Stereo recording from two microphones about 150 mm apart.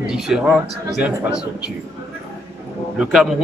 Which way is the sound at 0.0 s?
5° right (ahead or behind).